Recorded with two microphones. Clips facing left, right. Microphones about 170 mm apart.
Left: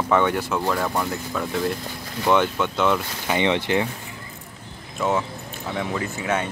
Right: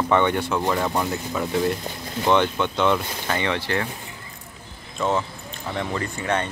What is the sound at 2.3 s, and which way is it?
Speech, 5° left (ahead or behind).